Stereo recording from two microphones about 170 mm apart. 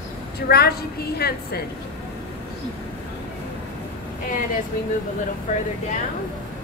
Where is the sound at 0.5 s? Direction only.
65° left (ahead or behind).